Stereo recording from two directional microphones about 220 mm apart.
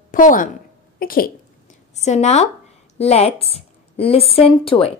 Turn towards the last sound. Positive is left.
turn(degrees=25)  # may be behind; listen again after turning